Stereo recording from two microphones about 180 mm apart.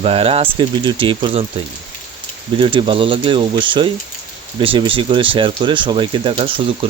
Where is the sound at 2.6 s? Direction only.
25° right (ahead or behind).